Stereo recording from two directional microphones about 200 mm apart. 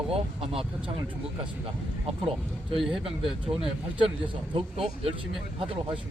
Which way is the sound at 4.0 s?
25° right (ahead or behind).